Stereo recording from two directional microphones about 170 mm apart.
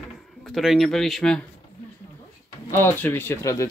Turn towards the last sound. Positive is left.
turn(degrees=15)  # may be behind; listen again after turning